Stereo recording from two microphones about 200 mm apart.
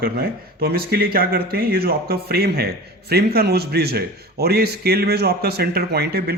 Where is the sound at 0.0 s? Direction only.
50° right (ahead or behind).